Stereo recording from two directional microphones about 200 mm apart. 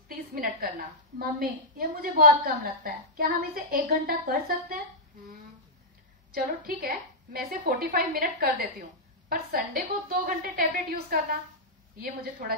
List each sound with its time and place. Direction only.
0.1 s a woman's voice: 50° right (ahead or behind)
6.3 s a woman's voice: 45° right (ahead or behind)